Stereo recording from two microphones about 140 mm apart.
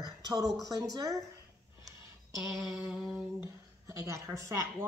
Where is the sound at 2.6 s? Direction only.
5° right (ahead or behind).